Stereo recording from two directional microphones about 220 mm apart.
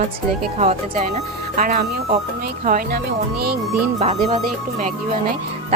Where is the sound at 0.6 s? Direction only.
30° right (ahead or behind).